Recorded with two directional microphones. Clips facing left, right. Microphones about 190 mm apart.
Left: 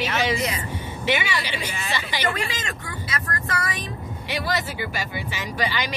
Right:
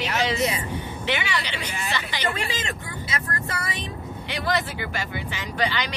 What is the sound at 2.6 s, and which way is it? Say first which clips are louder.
Speech: even; 25° right (ahead or behind).